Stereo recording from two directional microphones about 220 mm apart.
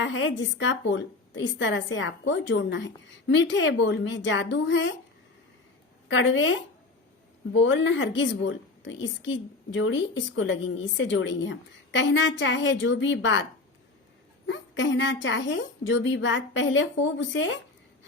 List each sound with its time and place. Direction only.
0.0 s a woman's voice: 60° left (ahead or behind)
6.1 s a woman's voice: 60° left (ahead or behind)
14.4 s a woman's voice: 55° left (ahead or behind)